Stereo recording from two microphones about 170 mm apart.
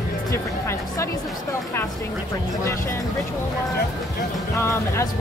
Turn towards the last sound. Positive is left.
turn(degrees=15)  # may be behind; listen again after turning